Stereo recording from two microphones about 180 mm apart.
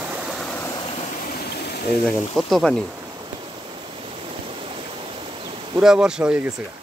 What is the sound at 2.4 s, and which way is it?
Speech, centre (ahead or behind).